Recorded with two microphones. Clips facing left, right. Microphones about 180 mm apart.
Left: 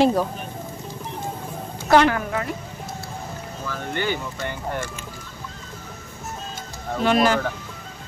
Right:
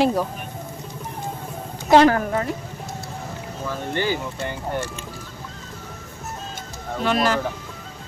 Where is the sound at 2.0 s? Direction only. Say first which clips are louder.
Right 4 dB; 35° right (ahead or behind).